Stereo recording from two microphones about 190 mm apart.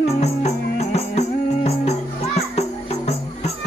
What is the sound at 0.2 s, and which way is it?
Music, 35° left (ahead or behind).